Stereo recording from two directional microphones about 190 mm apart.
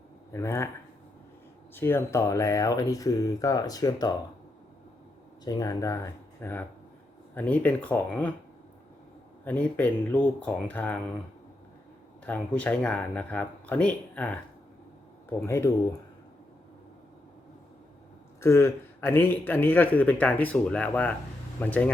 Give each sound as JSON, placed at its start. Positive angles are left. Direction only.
{"t": 0.3, "sound": "speech", "side_deg": 15}
{"t": 1.7, "sound": "a man's voice", "side_deg": 10}
{"t": 5.5, "sound": "a man's voice", "side_deg": 20}
{"t": 9.4, "sound": "a man's voice", "side_deg": 10}
{"t": 12.2, "sound": "a man's voice", "side_deg": 5}
{"t": 18.3, "sound": "a man's voice", "side_deg": 15}